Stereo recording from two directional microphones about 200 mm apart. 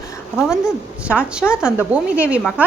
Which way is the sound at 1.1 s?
5° right (ahead or behind).